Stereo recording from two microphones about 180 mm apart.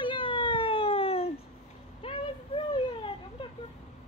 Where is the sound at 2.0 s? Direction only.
30° left (ahead or behind).